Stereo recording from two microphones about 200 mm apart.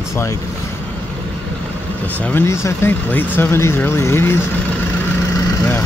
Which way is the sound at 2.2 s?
10° left (ahead or behind).